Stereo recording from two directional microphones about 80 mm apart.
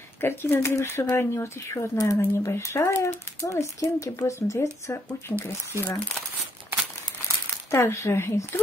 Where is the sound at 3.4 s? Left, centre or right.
Left.